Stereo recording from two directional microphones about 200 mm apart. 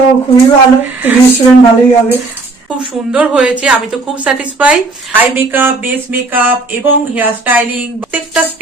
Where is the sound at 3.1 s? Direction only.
5° right (ahead or behind).